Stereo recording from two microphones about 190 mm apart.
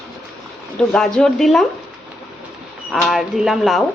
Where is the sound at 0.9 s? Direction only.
5° left (ahead or behind).